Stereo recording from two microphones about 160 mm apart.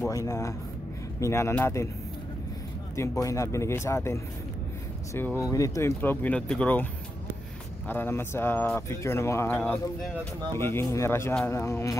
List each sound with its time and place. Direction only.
0.0 s speech: 20° left (ahead or behind)
3.0 s speech: 20° left (ahead or behind)
7.9 s speech: 15° left (ahead or behind)